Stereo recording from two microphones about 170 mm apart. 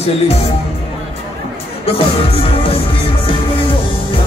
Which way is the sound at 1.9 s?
35° left (ahead or behind).